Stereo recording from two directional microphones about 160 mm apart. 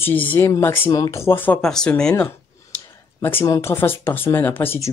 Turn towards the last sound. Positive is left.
turn(degrees=15)  # may be behind; listen again after turning